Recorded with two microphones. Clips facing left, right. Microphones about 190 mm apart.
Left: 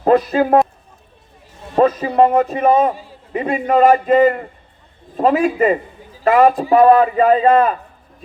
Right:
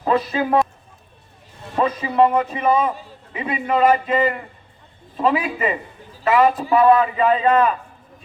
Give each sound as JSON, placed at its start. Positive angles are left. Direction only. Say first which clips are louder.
{"t": 0.0, "sound": "a man's voice", "louder": "left 6 dB", "side_deg": 50}
{"t": 1.7, "sound": "a man's voice", "louder": "left 6 dB", "side_deg": 45}